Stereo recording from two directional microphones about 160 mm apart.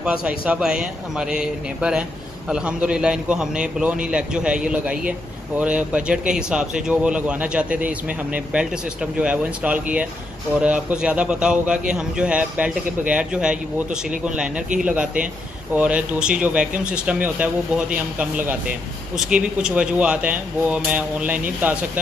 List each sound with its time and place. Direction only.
0.0 s a man's voice: 5° right (ahead or behind)